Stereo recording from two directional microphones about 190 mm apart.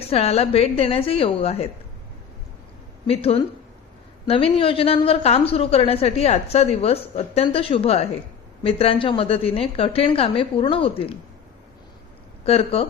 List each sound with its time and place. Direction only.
0.0 s a woman's voice: 30° left (ahead or behind)
3.1 s a woman's voice: 30° left (ahead or behind)
12.5 s a woman's voice: 30° left (ahead or behind)